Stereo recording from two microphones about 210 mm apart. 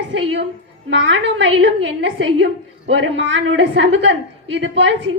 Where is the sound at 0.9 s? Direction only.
60° right (ahead or behind).